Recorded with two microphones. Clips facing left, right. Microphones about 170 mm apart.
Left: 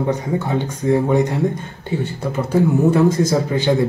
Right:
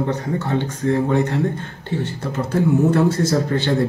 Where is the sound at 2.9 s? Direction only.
10° left (ahead or behind).